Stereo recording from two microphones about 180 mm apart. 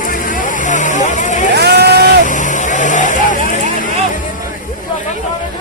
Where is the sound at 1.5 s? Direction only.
65° right (ahead or behind).